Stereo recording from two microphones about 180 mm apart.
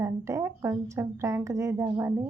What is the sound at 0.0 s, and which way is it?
A woman's voice, 15° right (ahead or behind).